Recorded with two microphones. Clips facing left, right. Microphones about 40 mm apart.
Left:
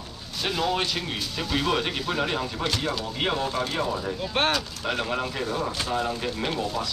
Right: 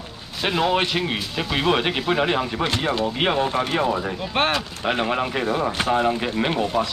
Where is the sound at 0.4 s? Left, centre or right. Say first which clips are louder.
Right 5 dB; right.